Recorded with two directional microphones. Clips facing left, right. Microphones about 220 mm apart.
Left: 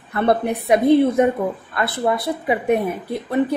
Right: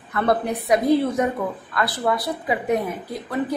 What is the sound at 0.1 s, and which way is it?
A woman's voice, 30° left (ahead or behind).